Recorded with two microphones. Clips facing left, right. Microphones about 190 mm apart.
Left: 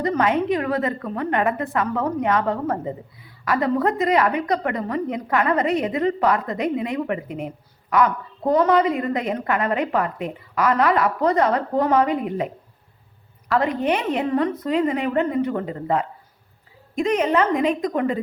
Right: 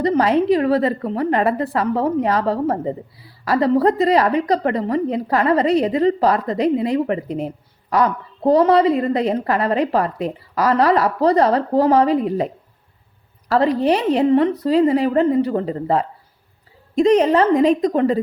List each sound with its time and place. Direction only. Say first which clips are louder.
0.0 s a woman's voice: right 4 dB; 35° right (ahead or behind)
13.5 s a woman's voice: right 5 dB; 35° right (ahead or behind)